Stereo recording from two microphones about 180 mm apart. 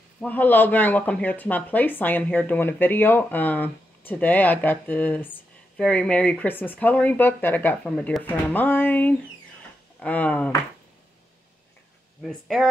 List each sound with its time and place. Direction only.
0.2 s speech: 10° left (ahead or behind)
12.2 s speech: centre (ahead or behind)